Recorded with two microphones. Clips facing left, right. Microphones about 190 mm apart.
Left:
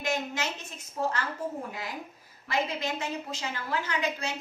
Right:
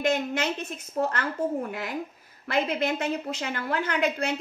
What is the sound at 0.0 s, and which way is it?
Speech, 55° right (ahead or behind).